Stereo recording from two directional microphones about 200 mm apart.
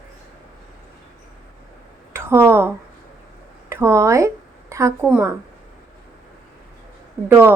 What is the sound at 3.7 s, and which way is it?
Speech, 15° right (ahead or behind).